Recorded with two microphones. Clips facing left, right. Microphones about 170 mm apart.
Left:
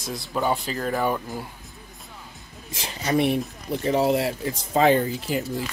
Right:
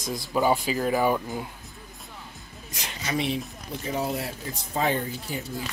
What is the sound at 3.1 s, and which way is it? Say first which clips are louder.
Speech: left 6 dB; 55° left (ahead or behind).